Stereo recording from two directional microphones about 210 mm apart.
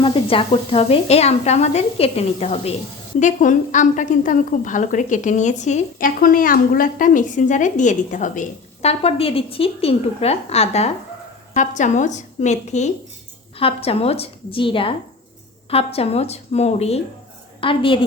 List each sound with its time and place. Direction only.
0.0 s a woman's voice: 25° left (ahead or behind)